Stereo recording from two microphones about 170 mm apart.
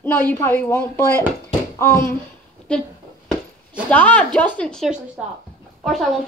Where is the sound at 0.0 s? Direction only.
10° left (ahead or behind).